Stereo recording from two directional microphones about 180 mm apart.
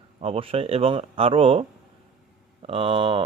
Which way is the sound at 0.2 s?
30° right (ahead or behind).